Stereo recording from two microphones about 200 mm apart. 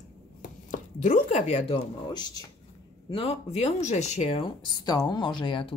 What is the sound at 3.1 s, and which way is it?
Speech, 30° left (ahead or behind).